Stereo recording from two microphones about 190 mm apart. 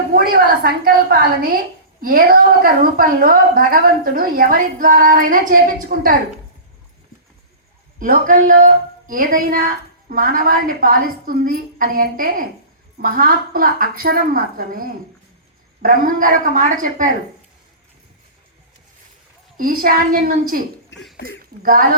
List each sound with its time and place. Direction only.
0.1 s a woman's voice: 50° right (ahead or behind)
7.9 s a woman's voice: 45° right (ahead or behind)
19.5 s a woman's voice: 50° right (ahead or behind)
20.9 s a sound: 70° left (ahead or behind)
21.6 s a woman's voice: 50° right (ahead or behind)